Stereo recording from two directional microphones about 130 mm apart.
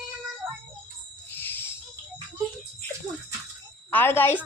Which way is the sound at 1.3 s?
15° left (ahead or behind).